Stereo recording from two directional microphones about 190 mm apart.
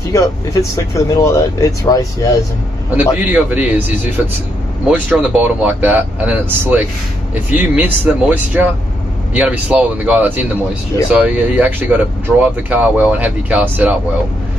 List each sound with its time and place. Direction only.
0.1 s speech: 15° left (ahead or behind)
3.0 s speech: 10° right (ahead or behind)